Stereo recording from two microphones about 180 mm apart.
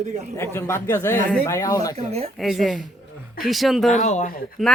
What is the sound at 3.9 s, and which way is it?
Speech, 40° left (ahead or behind).